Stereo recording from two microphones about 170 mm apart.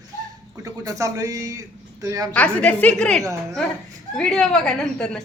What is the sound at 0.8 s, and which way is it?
Speech, 20° right (ahead or behind).